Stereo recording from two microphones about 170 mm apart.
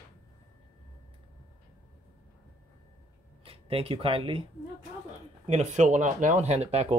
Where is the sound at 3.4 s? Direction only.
35° right (ahead or behind).